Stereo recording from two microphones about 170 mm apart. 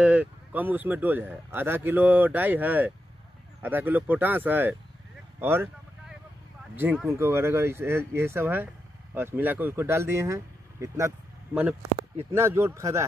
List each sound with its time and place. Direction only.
0.0 s a man's voice: 5° right (ahead or behind)
5.4 s a sound: 15° right (ahead or behind)
7.1 s a man's voice: 15° right (ahead or behind)